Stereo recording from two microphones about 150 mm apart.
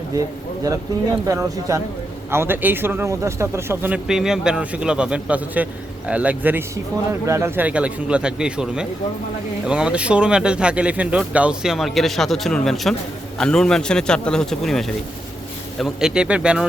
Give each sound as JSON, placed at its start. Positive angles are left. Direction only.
{"t": 0.1, "sound": "speech", "side_deg": -25}